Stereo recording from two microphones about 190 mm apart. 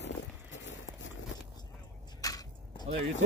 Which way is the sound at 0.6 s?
75° left (ahead or behind).